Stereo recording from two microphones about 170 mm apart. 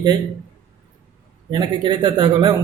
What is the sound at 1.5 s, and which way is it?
A man's voice, 25° right (ahead or behind).